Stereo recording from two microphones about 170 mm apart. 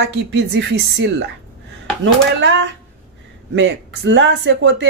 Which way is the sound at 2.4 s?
90° right.